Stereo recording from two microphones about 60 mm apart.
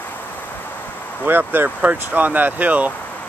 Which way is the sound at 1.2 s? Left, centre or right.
Right.